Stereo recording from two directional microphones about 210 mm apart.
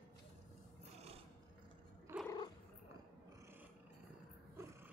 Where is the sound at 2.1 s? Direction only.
10° right (ahead or behind).